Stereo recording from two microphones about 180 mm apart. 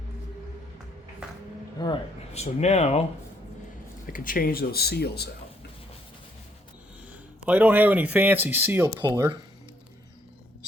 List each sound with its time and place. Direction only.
1.8 s speech: 25° left (ahead or behind)
2.3 s speech: 35° left (ahead or behind)
4.1 s speech: 50° left (ahead or behind)
7.4 s speech: 10° right (ahead or behind)